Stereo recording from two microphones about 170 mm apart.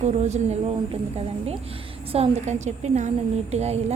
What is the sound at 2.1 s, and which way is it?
A woman's voice, 40° right (ahead or behind).